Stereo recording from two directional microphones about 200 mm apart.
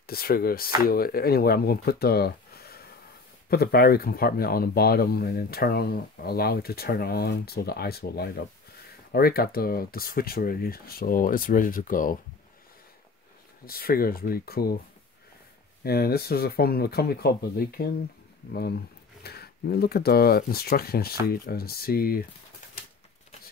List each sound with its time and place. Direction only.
0.0 s speech: 50° left (ahead or behind)
13.7 s speech: 50° left (ahead or behind)
15.8 s speech: 50° left (ahead or behind)